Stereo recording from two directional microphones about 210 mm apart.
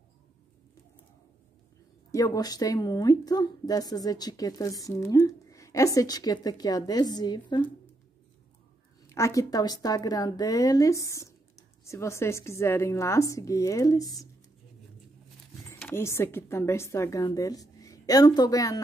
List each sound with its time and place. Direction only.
2.0 s a woman's voice: 15° left (ahead or behind)
9.1 s a woman's voice: 15° left (ahead or behind)
15.7 s a woman's voice: 10° left (ahead or behind)